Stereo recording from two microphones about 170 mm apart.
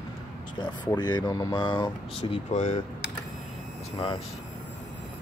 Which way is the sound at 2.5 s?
45° left (ahead or behind).